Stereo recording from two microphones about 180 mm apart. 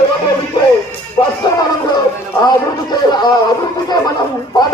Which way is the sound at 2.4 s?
25° left (ahead or behind).